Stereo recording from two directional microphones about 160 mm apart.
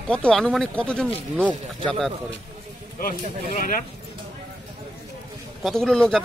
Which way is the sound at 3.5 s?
55° left (ahead or behind).